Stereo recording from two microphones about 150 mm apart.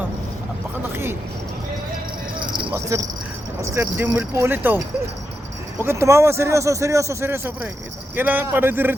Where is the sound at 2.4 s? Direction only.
30° right (ahead or behind).